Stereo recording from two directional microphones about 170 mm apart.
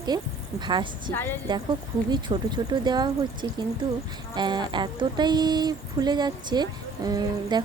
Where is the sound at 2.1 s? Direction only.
25° right (ahead or behind).